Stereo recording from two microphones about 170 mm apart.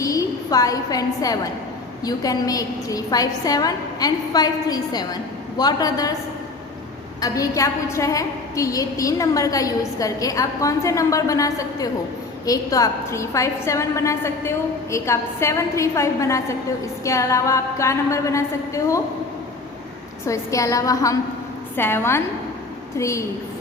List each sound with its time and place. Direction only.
0.0 s a woman's voice: 20° left (ahead or behind)
7.2 s a woman's voice: 20° left (ahead or behind)
20.2 s a woman's voice: 20° left (ahead or behind)